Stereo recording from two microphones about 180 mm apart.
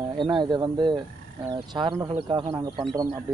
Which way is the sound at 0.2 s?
25° right (ahead or behind).